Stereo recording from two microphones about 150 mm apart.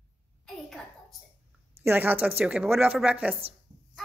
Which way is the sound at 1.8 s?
10° right (ahead or behind).